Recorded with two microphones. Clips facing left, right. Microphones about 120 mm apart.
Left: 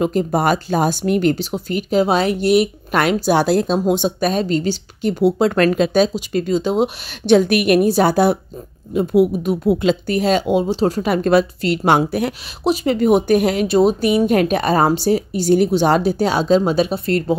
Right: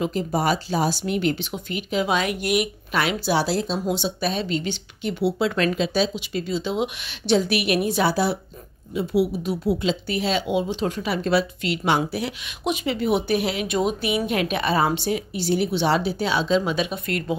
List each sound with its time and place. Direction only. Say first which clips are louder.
0.0 s speech: left 6 dB; 50° left (ahead or behind); by 2.7 s 30° left (ahead or behind)
2.9 s speech: left 6 dB; 45° left (ahead or behind)
12.6 s speech: left 8 dB; 40° left (ahead or behind)
13.7 s speech: left 9 dB; 35° left (ahead or behind)